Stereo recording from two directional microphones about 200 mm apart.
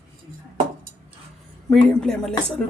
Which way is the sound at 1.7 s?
5° left (ahead or behind).